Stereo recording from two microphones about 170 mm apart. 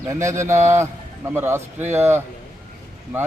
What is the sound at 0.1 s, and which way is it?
Speech, 15° right (ahead or behind).